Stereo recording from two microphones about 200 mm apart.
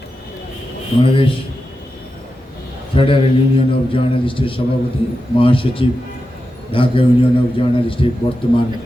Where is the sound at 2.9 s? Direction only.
25° left (ahead or behind).